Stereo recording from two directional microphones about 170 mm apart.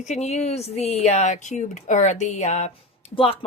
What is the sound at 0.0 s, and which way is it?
A woman's voice, 40° left (ahead or behind).